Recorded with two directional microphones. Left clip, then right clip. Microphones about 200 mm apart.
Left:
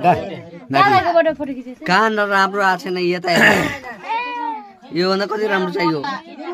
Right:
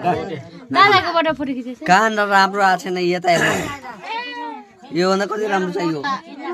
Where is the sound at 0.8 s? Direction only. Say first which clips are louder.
Left 2 dB; 45° right (ahead or behind).